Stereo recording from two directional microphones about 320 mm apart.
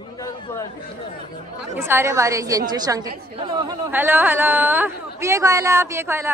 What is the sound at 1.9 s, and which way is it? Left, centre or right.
Speech, centre.